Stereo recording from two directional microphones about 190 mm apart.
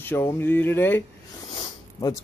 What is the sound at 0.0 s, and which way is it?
Speech, 10° left (ahead or behind).